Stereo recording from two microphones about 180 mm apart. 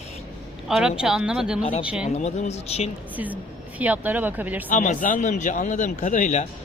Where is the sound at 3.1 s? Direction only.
10° right (ahead or behind).